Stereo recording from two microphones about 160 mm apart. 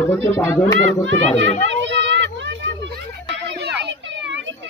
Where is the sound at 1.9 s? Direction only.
90° right.